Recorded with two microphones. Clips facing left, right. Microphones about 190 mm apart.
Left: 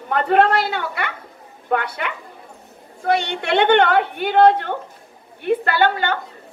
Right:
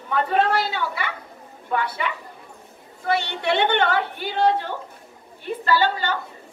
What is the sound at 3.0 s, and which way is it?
A woman's voice, 55° left (ahead or behind).